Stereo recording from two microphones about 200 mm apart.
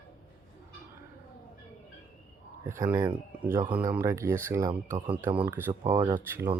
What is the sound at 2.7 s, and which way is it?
Speech, 15° right (ahead or behind).